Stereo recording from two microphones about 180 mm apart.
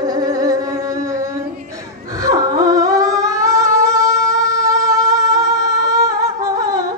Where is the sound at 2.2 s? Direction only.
20° right (ahead or behind).